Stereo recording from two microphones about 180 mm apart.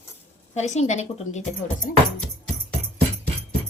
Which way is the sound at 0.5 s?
40° left (ahead or behind).